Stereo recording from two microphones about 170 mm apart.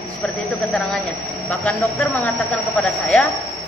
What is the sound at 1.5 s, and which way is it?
Speech, 10° left (ahead or behind).